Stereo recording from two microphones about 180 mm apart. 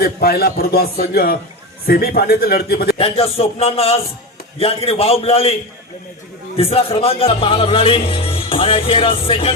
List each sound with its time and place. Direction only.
0.0 s a man's voice: 55° left (ahead or behind)
3.0 s a man's voice: 35° left (ahead or behind)
6.6 s a man's voice: 30° left (ahead or behind)